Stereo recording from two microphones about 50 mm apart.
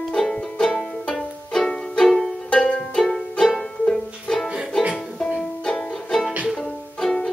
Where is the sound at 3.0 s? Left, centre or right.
Centre.